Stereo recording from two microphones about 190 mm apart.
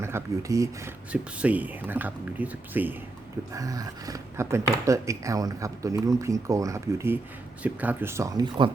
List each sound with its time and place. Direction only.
0.0 s speech: 15° right (ahead or behind)